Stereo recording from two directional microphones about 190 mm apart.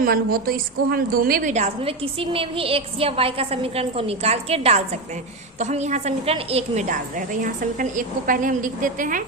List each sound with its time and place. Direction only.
0.0 s a woman's voice: 50° right (ahead or behind)